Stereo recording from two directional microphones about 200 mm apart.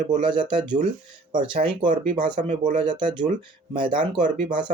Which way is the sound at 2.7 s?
25° right (ahead or behind).